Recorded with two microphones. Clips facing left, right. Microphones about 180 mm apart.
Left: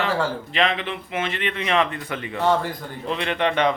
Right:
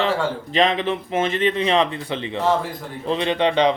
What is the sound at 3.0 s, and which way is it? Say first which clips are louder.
Speech: right 3 dB; 30° right (ahead or behind).